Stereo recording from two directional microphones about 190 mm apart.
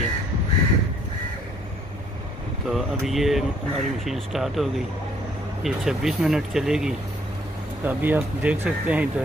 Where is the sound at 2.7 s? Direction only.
Centre (ahead or behind).